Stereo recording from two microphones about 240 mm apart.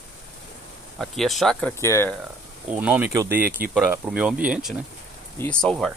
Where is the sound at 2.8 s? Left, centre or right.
Centre.